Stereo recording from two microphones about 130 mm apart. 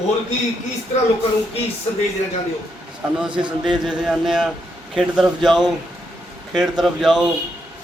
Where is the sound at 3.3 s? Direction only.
35° right (ahead or behind).